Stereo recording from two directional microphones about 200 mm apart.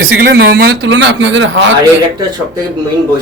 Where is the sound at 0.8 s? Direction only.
70° right (ahead or behind).